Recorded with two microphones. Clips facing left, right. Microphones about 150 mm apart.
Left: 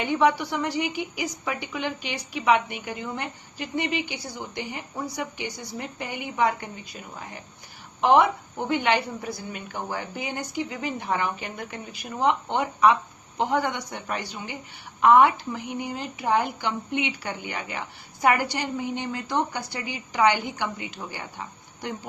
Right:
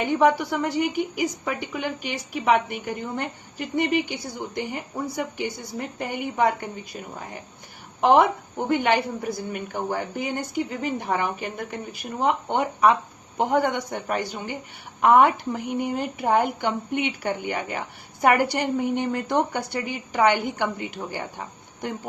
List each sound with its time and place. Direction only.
0.0 s speech: 50° right (ahead or behind)
13.3 s speech: 50° right (ahead or behind)